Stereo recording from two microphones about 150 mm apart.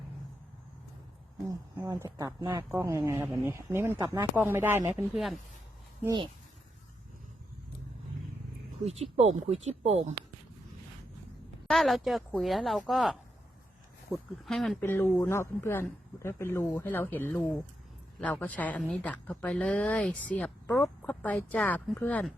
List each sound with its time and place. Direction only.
1.5 s a woman's voice: 15° right (ahead or behind)
5.1 s a woman's voice: centre (ahead or behind)
8.8 s speech: 45° right (ahead or behind)
11.7 s a woman's voice: centre (ahead or behind)
14.1 s a woman's voice: 20° right (ahead or behind)
14.4 s a woman's voice: centre (ahead or behind)
14.8 s speech: 15° left (ahead or behind)